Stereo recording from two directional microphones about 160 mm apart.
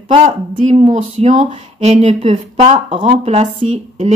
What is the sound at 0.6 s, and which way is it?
Speech, 45° right (ahead or behind).